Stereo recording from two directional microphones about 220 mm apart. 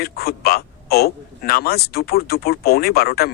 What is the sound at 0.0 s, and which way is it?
A man's voice, 45° left (ahead or behind).